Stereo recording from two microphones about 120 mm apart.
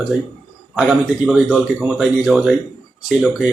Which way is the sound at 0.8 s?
5° right (ahead or behind).